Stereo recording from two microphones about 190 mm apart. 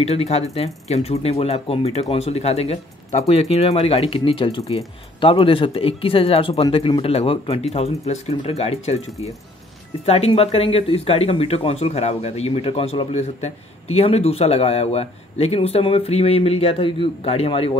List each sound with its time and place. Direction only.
0.0 s speech: 35° left (ahead or behind)